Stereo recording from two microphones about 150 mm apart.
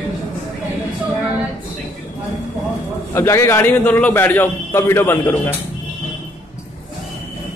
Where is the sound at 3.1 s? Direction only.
20° left (ahead or behind).